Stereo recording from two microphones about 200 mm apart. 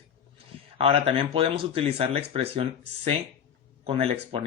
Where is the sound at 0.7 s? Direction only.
30° right (ahead or behind).